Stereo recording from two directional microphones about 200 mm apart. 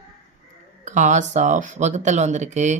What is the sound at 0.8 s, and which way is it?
Speech, 35° right (ahead or behind).